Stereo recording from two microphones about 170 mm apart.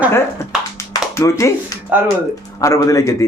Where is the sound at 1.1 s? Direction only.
15° left (ahead or behind).